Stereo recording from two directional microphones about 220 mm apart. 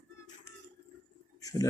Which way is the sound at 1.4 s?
15° left (ahead or behind).